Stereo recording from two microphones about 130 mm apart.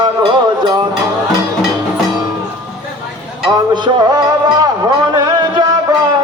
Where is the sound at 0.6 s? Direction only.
35° right (ahead or behind).